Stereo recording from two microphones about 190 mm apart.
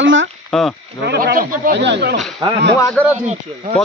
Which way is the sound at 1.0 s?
55° right (ahead or behind).